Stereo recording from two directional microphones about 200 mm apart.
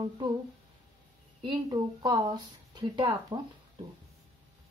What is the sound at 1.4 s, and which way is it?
Speech, 20° right (ahead or behind).